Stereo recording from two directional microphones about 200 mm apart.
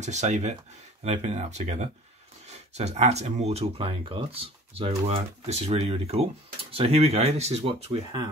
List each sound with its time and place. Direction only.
0.0 s speech: 35° right (ahead or behind)